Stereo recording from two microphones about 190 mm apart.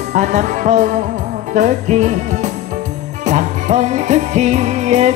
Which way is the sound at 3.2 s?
40° right (ahead or behind).